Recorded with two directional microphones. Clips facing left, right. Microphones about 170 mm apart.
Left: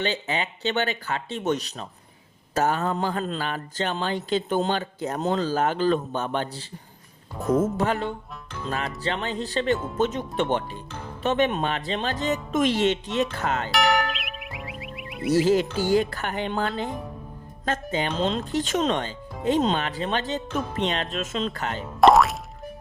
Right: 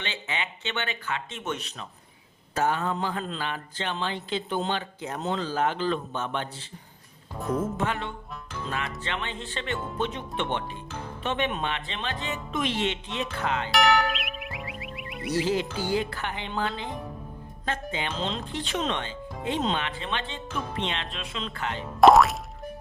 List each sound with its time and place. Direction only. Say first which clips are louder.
0.0 s speech: left 7 dB; 40° left (ahead or behind)
13.7 s music: right 1 dB; centre (ahead or behind)
15.4 s speech: left 6 dB; 45° left (ahead or behind)
17.9 s speech: left 9 dB; 40° left (ahead or behind)
21.8 s music: even; centre (ahead or behind)